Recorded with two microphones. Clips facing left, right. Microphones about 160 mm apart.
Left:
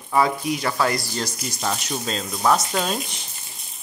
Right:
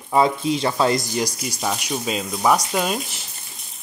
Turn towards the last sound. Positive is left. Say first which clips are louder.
# right 2 dB
turn(degrees=-5)  # may be behind; listen again after turning